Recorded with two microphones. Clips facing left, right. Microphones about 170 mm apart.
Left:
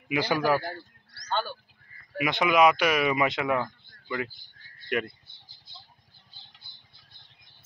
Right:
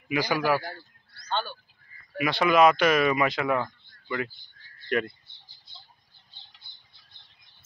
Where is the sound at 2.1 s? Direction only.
20° left (ahead or behind).